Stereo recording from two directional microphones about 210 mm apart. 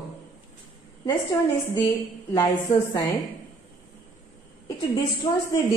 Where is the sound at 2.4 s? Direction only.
20° left (ahead or behind).